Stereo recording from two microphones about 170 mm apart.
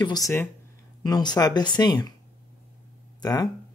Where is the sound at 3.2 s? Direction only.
20° left (ahead or behind).